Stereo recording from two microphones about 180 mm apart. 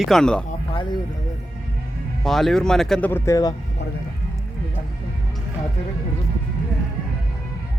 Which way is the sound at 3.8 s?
70° left (ahead or behind).